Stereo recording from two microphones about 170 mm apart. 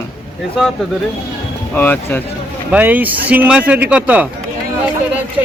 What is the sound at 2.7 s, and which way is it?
Speech, 10° right (ahead or behind).